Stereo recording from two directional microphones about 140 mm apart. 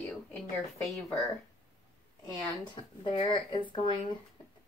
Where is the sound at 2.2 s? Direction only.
35° left (ahead or behind).